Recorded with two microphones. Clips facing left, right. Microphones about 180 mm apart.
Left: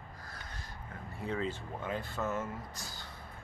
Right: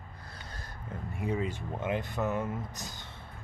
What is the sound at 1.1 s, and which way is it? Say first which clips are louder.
Speech: right 3 dB; 15° right (ahead or behind).